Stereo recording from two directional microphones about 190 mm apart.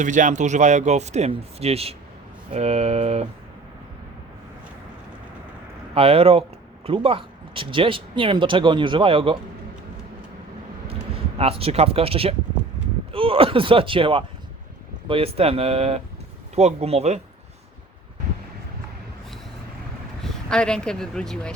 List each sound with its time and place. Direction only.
0.0 s speech: 40° right (ahead or behind)
5.9 s speech: 30° right (ahead or behind)
11.3 s speech: 30° right (ahead or behind)
20.2 s speech: 5° left (ahead or behind)